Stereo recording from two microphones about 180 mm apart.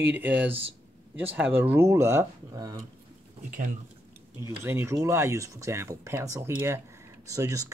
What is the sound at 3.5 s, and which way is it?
Speech, 45° right (ahead or behind).